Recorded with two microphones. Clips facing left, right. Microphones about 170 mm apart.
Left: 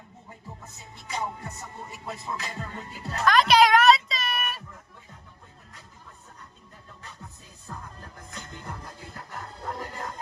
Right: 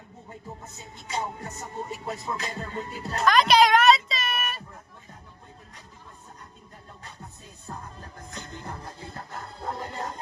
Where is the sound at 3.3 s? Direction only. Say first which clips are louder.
Even; centre (ahead or behind).